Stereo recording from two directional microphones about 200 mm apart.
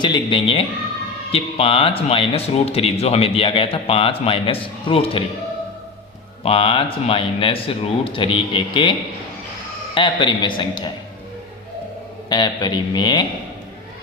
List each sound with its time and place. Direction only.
0.0 s speech: 25° left (ahead or behind)
6.4 s speech: 30° left (ahead or behind)
12.3 s speech: 20° left (ahead or behind)